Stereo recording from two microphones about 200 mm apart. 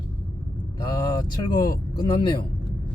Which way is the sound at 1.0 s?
20° left (ahead or behind).